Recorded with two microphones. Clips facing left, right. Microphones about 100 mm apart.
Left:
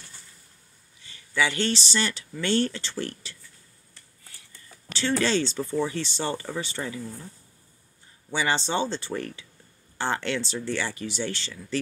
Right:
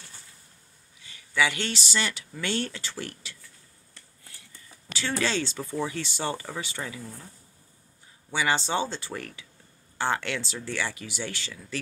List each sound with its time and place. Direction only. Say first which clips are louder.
1.0 s speech: even; 5° right (ahead or behind)
4.9 s speech: left 4 dB; 5° right (ahead or behind)
8.3 s speech: even; 5° right (ahead or behind)